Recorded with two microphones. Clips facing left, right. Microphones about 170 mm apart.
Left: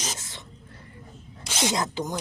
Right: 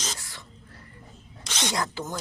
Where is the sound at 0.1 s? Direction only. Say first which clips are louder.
Left 2 dB; 20° left (ahead or behind).